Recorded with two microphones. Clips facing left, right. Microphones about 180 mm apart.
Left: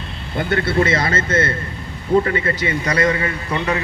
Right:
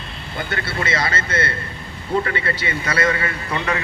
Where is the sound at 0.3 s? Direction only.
50° left (ahead or behind).